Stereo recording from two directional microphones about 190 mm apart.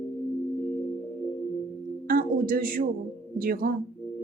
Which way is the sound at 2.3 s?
50° right (ahead or behind).